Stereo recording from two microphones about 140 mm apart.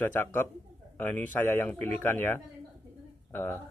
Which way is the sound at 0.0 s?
15° left (ahead or behind).